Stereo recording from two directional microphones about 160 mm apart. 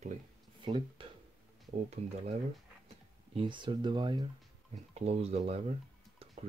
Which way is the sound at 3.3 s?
30° right (ahead or behind).